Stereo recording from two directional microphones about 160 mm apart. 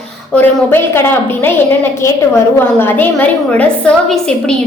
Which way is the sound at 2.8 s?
15° left (ahead or behind).